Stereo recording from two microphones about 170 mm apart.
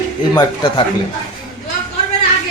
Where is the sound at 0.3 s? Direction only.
25° left (ahead or behind).